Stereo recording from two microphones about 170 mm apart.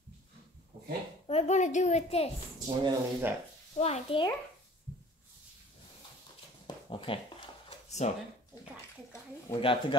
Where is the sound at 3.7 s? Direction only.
40° left (ahead or behind).